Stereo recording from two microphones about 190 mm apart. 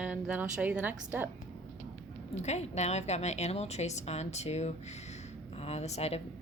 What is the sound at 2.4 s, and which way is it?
A woman's voice, 35° left (ahead or behind).